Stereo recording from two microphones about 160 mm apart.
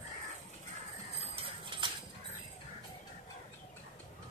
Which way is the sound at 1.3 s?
35° right (ahead or behind).